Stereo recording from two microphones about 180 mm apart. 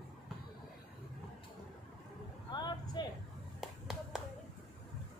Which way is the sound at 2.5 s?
25° left (ahead or behind).